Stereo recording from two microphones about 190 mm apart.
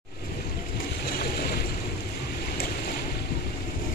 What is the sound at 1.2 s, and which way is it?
Boat, 55° left (ahead or behind).